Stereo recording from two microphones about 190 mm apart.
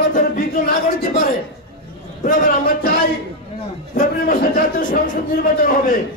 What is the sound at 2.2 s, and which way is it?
Speech, 45° left (ahead or behind).